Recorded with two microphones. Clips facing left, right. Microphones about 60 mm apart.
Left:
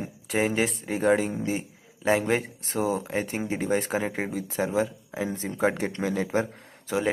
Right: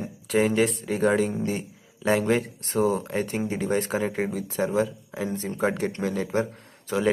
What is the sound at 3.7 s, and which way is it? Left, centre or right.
Speech, left.